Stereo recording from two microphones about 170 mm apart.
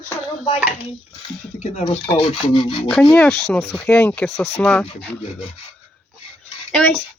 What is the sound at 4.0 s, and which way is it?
Speech, 10° left (ahead or behind).